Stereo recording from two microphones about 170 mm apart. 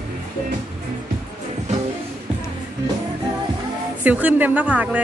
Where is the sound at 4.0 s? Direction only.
10° right (ahead or behind).